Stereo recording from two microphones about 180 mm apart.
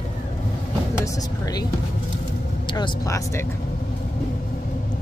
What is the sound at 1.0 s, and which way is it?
Speech, 20° left (ahead or behind).